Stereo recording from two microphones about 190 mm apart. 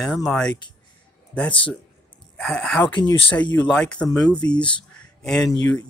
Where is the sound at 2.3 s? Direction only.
5° left (ahead or behind).